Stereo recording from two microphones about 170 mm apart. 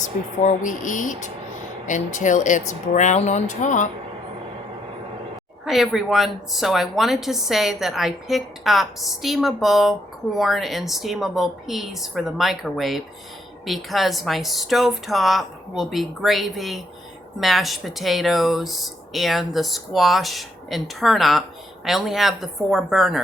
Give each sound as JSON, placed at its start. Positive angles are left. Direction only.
{"t": 0.0, "sound": "speech", "side_deg": 50}
{"t": 5.6, "sound": "a woman's voice", "side_deg": 0}